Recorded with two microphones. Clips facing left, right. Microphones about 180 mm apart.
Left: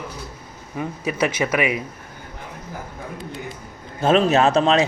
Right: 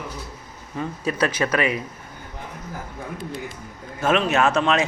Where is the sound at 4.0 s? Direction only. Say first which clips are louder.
Left 4 dB; 35° left (ahead or behind).